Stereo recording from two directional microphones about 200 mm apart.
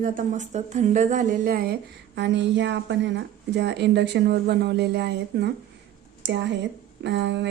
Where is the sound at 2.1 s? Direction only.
60° right (ahead or behind).